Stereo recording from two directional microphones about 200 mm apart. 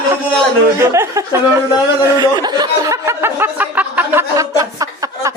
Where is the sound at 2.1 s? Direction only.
20° right (ahead or behind).